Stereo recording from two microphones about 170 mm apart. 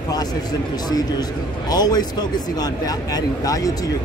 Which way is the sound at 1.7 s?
25° left (ahead or behind).